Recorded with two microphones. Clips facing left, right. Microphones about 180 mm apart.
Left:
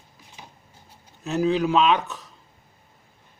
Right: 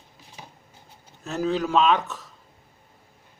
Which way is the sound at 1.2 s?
5° left (ahead or behind).